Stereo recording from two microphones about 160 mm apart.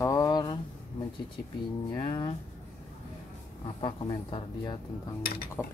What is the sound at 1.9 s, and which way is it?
Speech, 30° left (ahead or behind).